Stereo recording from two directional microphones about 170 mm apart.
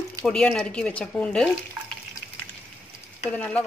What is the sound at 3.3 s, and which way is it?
Speech, 10° left (ahead or behind).